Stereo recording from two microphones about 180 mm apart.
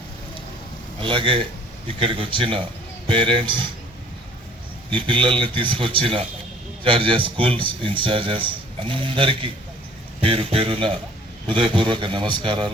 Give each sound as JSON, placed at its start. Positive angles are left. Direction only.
{"t": 1.0, "sound": "a man's voice", "side_deg": -30}
{"t": 4.9, "sound": "a man's voice", "side_deg": -30}